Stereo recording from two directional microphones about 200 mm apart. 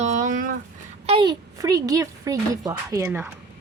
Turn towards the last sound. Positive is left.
turn(degrees=-10)  # may be behind; listen again after turning